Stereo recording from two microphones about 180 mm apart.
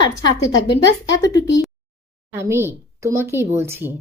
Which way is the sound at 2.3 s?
15° right (ahead or behind).